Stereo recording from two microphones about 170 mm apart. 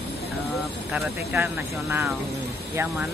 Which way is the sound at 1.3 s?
15° right (ahead or behind).